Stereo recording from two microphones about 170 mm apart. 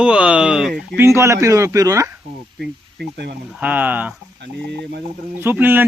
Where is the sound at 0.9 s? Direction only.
15° right (ahead or behind).